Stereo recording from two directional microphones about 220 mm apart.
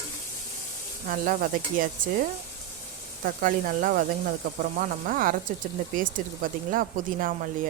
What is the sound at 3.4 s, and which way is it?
Sizzle, 40° right (ahead or behind).